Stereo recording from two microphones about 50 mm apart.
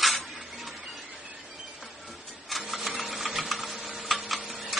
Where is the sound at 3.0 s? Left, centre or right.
Centre.